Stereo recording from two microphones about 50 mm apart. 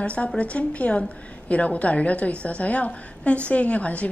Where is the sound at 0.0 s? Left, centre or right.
Left.